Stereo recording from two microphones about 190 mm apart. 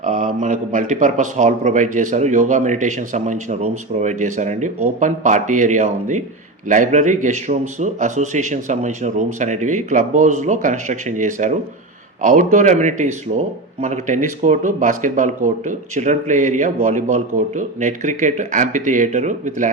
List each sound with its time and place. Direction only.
0.0 s a man's voice: 45° right (ahead or behind)